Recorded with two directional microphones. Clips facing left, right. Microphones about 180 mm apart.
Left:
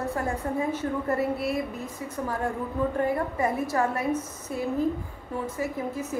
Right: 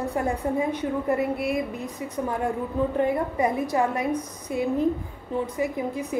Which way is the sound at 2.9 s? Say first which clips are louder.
Right 4 dB; 20° right (ahead or behind).